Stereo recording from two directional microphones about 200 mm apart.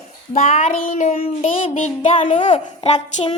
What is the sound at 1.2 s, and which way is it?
A child's voice, 30° left (ahead or behind).